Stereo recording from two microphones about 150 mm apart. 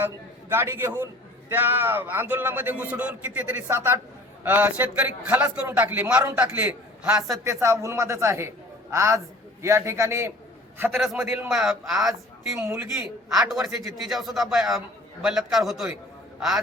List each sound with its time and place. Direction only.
0.0 s a man's voice: 15° right (ahead or behind)
7.4 s a man's voice: 20° right (ahead or behind)
10.9 s a man's voice: centre (ahead or behind)
12.5 s a man's voice: 15° right (ahead or behind)
13.3 s a man's voice: centre (ahead or behind)